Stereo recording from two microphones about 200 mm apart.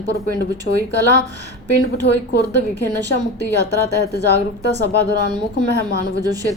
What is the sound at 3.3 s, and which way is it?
Speech, 55° right (ahead or behind).